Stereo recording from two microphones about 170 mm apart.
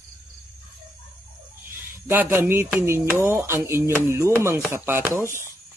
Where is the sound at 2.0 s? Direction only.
10° right (ahead or behind).